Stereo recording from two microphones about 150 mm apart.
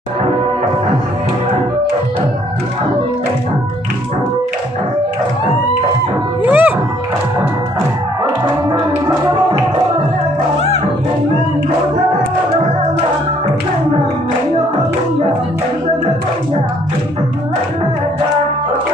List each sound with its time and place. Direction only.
6.4 s speech: 10° right (ahead or behind)
8.6 s music: 20° right (ahead or behind)